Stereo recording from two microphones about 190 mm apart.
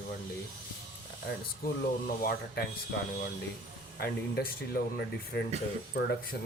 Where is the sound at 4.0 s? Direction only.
55° left (ahead or behind).